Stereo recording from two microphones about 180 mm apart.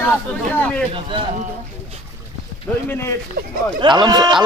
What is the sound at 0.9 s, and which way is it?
Speech, 30° right (ahead or behind).